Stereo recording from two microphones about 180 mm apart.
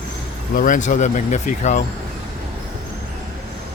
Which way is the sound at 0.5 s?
45° left (ahead or behind).